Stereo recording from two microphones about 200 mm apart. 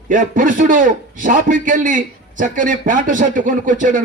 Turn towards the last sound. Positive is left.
turn(degrees=-40)  # may be behind; listen again after turning